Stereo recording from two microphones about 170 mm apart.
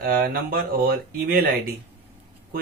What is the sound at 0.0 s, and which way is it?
Speech, 60° right (ahead or behind).